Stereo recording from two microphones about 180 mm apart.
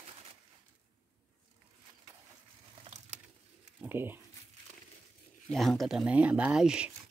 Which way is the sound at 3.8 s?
10° right (ahead or behind).